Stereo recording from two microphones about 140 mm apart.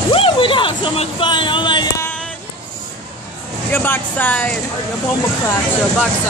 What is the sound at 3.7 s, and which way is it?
Speech, 15° left (ahead or behind).